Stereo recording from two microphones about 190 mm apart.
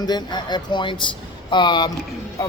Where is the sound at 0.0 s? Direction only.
20° left (ahead or behind).